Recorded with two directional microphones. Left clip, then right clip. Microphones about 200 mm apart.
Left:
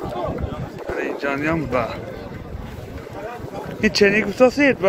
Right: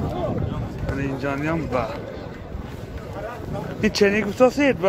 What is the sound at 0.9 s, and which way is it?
Speech, 10° left (ahead or behind).